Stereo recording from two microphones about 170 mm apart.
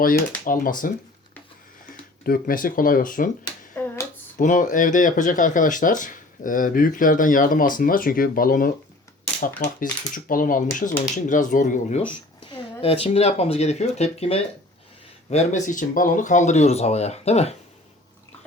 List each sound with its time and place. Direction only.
0.0 s speech: 55° left (ahead or behind)
2.2 s speech: 55° left (ahead or behind)
4.4 s speech: 50° left (ahead or behind)
12.4 s speech: 30° left (ahead or behind)